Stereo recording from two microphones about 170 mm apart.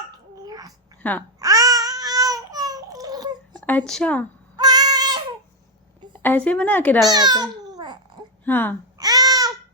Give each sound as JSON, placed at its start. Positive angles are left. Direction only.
{"t": 0.4, "sound": "babbling", "side_deg": -20}
{"t": 1.0, "sound": "a woman's voice", "side_deg": 10}
{"t": 1.4, "sound": "babbling", "side_deg": -20}
{"t": 3.7, "sound": "a woman's voice", "side_deg": 5}
{"t": 4.5, "sound": "a sound", "side_deg": -25}
{"t": 6.1, "sound": "a woman's voice", "side_deg": 10}
{"t": 7.0, "sound": "a child's voice", "side_deg": -25}
{"t": 8.4, "sound": "a woman's voice", "side_deg": 10}
{"t": 9.0, "sound": "babbling", "side_deg": -20}